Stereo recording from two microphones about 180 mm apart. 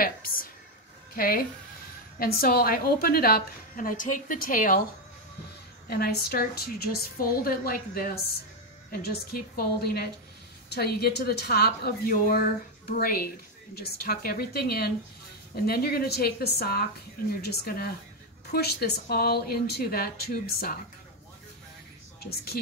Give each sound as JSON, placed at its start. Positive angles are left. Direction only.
{"t": 0.0, "sound": "a sound", "side_deg": 55}
{"t": 1.1, "sound": "a woman's voice", "side_deg": 55}
{"t": 5.9, "sound": "a woman's voice", "side_deg": 60}
{"t": 22.2, "sound": "a woman's voice", "side_deg": 60}